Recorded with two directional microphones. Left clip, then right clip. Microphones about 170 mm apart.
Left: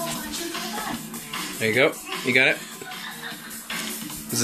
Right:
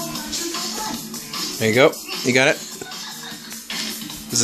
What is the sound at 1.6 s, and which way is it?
Speech, 30° right (ahead or behind).